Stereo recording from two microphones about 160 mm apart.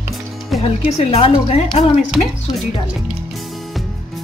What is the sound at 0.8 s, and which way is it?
A woman's voice, 40° left (ahead or behind).